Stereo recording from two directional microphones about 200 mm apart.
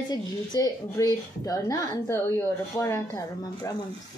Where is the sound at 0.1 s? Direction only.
20° left (ahead or behind).